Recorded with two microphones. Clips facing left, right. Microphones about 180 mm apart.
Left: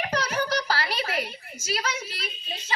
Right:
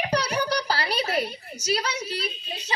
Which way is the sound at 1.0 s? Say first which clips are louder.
Right 4 dB; 35° right (ahead or behind).